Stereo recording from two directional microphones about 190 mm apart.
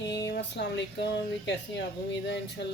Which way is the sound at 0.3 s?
65° left (ahead or behind).